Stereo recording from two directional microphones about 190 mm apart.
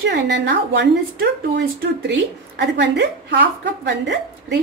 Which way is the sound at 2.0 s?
65° right (ahead or behind).